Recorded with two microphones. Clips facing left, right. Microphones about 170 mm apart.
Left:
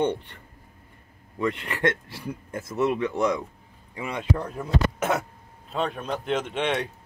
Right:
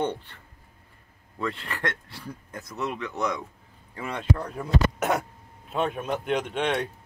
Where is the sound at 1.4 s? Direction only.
20° left (ahead or behind).